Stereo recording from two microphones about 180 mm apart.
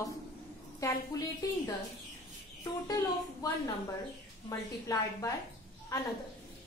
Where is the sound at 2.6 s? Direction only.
20° left (ahead or behind).